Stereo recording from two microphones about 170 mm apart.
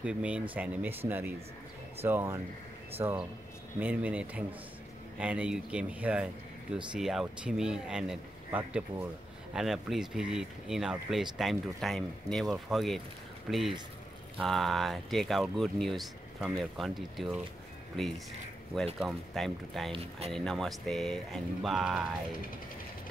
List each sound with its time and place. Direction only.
0.0 s speech: 5° right (ahead or behind)
19.9 s speech: 35° right (ahead or behind)
20.2 s speech: centre (ahead or behind)